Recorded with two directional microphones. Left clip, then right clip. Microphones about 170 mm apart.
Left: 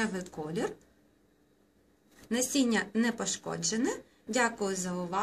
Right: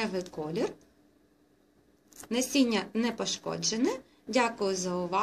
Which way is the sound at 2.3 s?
15° right (ahead or behind).